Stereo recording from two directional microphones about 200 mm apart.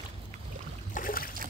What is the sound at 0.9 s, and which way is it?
Boat, 45° left (ahead or behind).